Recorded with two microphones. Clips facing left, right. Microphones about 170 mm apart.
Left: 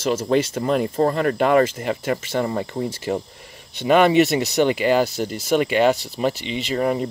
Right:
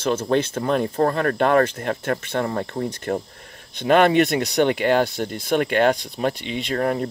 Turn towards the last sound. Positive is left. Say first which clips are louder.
# left 1 dB
turn(degrees=5)  # may be behind; listen again after turning